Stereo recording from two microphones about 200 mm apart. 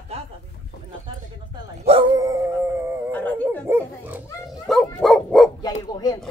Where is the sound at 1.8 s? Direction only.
30° right (ahead or behind).